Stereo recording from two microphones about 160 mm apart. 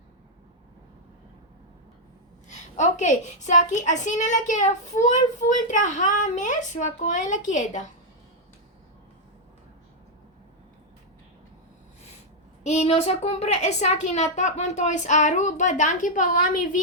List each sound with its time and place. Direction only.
2.5 s a woman's voice: 50° left (ahead or behind)
12.6 s a woman's voice: 45° left (ahead or behind)